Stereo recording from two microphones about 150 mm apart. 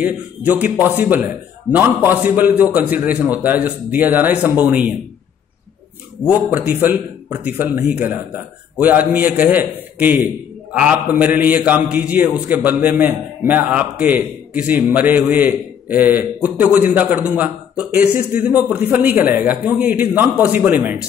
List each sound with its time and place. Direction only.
0.0 s a man's voice: 10° right (ahead or behind)
6.2 s a man's voice: 10° right (ahead or behind)